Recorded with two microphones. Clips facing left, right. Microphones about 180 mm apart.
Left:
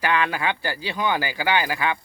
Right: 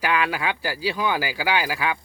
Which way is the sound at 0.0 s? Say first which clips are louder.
Left 1 dB; 5° right (ahead or behind).